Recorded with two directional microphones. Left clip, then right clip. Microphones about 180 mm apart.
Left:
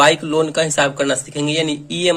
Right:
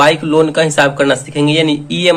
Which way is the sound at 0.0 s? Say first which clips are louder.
Right 4 dB; 30° left (ahead or behind).